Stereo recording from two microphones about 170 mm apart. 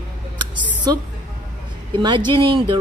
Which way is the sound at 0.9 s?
25° right (ahead or behind).